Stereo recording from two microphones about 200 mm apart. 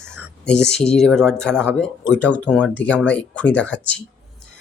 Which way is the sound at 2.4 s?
10° right (ahead or behind).